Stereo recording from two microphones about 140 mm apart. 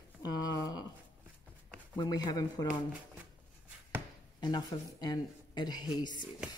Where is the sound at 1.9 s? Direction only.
30° left (ahead or behind).